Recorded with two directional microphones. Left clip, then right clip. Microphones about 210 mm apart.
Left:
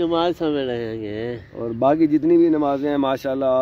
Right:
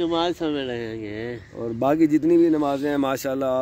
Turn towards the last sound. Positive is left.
turn(degrees=-15)  # may be behind; listen again after turning